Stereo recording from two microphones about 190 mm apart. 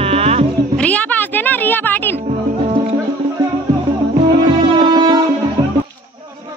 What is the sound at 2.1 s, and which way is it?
Music, 35° right (ahead or behind).